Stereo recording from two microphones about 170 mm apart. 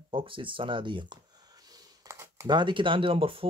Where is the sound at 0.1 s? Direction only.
30° right (ahead or behind).